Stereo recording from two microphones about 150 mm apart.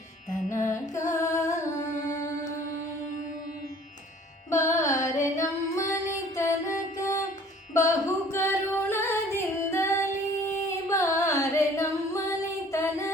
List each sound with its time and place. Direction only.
1.1 s music: 20° left (ahead or behind)
4.5 s music: 20° left (ahead or behind)
7.7 s singing: 20° left (ahead or behind)
12.7 s music: 20° left (ahead or behind)